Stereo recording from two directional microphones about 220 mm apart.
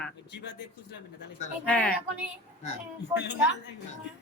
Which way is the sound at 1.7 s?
5° left (ahead or behind).